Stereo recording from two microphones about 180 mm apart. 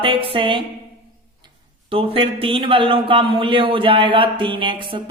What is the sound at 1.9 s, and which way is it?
A man's voice, 30° right (ahead or behind).